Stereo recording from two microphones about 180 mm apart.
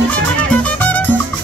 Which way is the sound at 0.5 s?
10° left (ahead or behind).